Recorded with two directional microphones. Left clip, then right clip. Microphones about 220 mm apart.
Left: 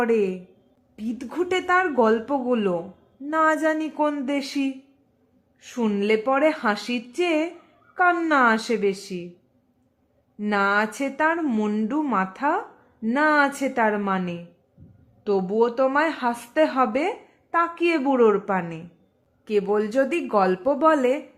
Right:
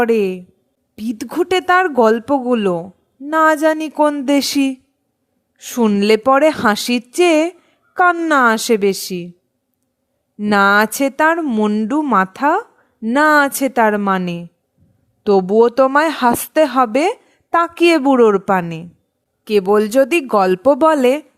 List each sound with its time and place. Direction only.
0.0 s speech: 45° right (ahead or behind)
10.3 s speech: 45° right (ahead or behind)